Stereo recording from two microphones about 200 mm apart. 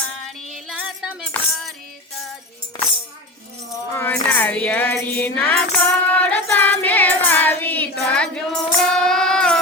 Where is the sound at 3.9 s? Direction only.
10° left (ahead or behind).